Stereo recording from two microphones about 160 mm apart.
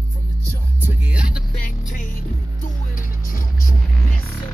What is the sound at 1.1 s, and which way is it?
Music, 5° right (ahead or behind).